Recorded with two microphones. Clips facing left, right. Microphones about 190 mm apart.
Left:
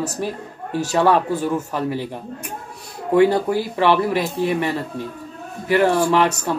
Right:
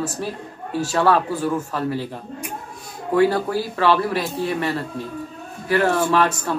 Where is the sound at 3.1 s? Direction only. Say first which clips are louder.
Left 3 dB; 20° left (ahead or behind).